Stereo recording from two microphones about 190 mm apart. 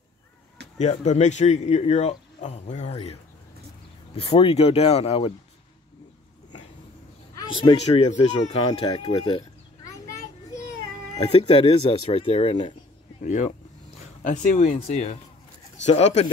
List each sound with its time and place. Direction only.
0.7 s speech: 35° left (ahead or behind)
7.3 s speech: 25° left (ahead or behind)
11.1 s speech: 30° left (ahead or behind)